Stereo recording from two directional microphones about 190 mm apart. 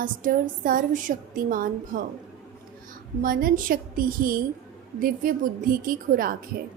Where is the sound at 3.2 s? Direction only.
45° right (ahead or behind).